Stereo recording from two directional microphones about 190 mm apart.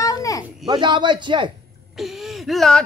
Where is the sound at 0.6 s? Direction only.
25° right (ahead or behind).